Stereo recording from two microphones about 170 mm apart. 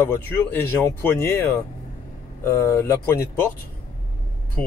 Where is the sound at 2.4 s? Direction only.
15° left (ahead or behind).